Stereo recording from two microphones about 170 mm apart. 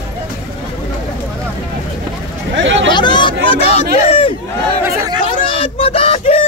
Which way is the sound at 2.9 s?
25° left (ahead or behind).